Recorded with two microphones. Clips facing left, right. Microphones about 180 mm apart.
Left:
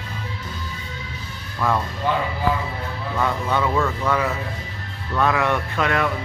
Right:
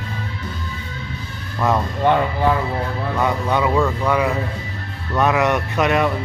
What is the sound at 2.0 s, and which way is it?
Speech, 60° right (ahead or behind).